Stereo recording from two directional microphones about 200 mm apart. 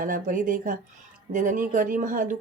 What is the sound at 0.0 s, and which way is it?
Speech, 40° right (ahead or behind).